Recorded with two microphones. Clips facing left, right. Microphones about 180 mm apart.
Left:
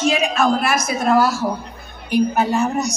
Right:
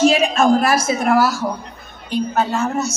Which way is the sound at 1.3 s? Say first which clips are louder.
Left 1 dB; centre (ahead or behind).